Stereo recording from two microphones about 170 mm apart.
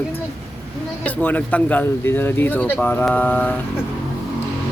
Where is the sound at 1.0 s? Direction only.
10° left (ahead or behind).